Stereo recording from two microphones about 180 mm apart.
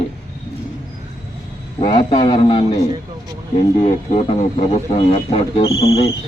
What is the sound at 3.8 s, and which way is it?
A man's voice, 35° left (ahead or behind).